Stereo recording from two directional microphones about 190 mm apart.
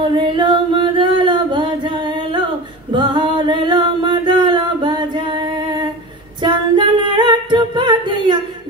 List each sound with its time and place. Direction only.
0.0 s singing: 25° right (ahead or behind)
2.9 s a sound: 25° right (ahead or behind)
6.4 s singing: 25° right (ahead or behind)